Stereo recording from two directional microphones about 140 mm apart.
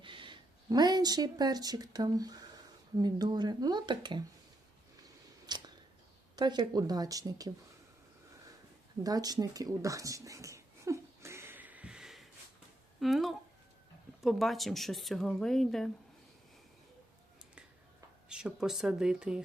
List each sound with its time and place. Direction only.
0.0 s speech: 35° right (ahead or behind)
5.0 s a sound: 30° right (ahead or behind)
6.3 s speech: 30° right (ahead or behind)
9.0 s a sound: 25° right (ahead or behind); by 12.2 s 5° right (ahead or behind)
13.0 s speech: centre (ahead or behind)
18.3 s speech: 5° right (ahead or behind)